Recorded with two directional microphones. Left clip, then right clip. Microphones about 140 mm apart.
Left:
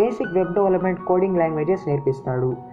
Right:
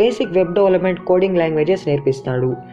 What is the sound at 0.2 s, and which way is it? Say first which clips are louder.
A woman's voice: right 5 dB; 25° right (ahead or behind).